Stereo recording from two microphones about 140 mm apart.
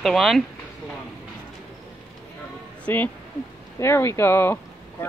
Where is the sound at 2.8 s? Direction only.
10° left (ahead or behind).